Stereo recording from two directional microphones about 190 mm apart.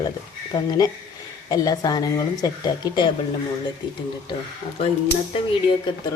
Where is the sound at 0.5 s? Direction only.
20° left (ahead or behind).